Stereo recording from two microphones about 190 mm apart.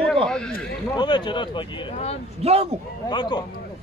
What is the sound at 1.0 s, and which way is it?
Speech, 25° left (ahead or behind).